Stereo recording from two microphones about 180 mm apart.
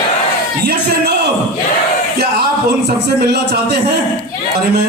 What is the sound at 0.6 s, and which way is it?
A man's voice, 65° right (ahead or behind).